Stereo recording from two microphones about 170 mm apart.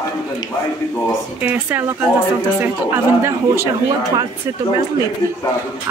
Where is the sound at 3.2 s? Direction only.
15° right (ahead or behind).